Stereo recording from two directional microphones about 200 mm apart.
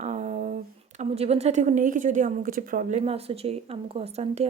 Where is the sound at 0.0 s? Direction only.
35° right (ahead or behind).